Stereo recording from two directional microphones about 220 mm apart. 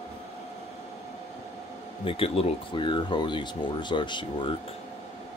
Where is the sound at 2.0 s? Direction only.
25° left (ahead or behind).